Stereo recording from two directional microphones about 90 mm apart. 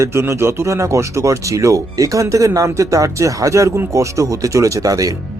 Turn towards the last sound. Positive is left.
turn(degrees=-40)  # may be behind; listen again after turning